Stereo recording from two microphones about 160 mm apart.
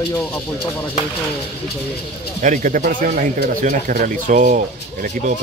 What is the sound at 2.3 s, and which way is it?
Speech, 55° right (ahead or behind).